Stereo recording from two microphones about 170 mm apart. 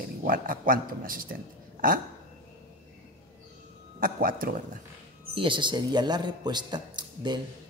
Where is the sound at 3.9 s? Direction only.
55° right (ahead or behind).